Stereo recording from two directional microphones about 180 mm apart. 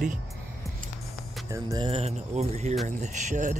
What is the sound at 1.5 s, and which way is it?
Speech, 20° right (ahead or behind).